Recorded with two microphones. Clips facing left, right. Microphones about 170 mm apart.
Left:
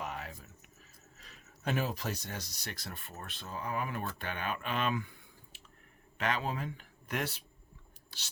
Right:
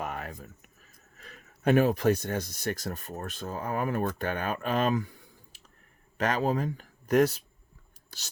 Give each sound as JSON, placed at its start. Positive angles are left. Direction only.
{"t": 0.0, "sound": "speech", "side_deg": -55}
{"t": 8.1, "sound": "filing", "side_deg": -45}